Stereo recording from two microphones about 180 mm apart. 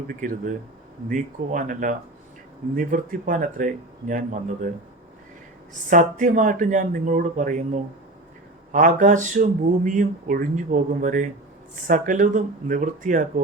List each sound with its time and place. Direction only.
0.1 s speech: 50° right (ahead or behind)
5.9 s speech: 45° right (ahead or behind)
8.7 s speech: 45° right (ahead or behind)